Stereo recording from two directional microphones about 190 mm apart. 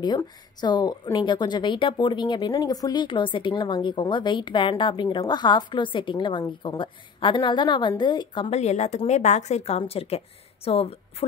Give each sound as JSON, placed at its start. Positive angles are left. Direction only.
{"t": 0.0, "sound": "a woman's voice", "side_deg": 20}